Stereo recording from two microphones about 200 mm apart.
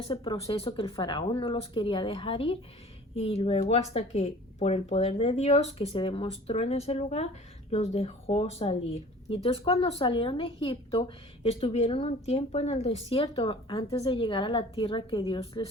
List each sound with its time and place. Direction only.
0.0 s speech: 25° left (ahead or behind)